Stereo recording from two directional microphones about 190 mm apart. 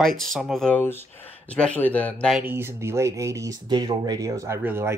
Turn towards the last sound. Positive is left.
turn(degrees=-10)  # may be behind; listen again after turning